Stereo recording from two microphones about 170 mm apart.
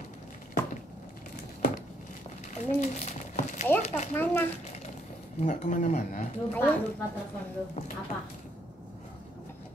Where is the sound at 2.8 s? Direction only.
45° left (ahead or behind).